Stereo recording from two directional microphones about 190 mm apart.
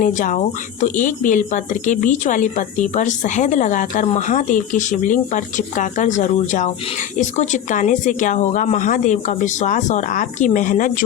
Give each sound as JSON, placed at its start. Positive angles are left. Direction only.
{"t": 0.0, "sound": "speech", "side_deg": 40}